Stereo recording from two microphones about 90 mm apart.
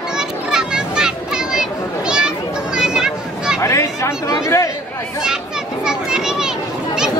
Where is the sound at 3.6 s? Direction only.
35° left (ahead or behind).